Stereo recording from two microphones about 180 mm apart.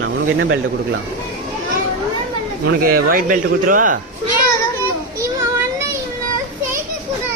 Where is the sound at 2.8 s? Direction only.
55° right (ahead or behind).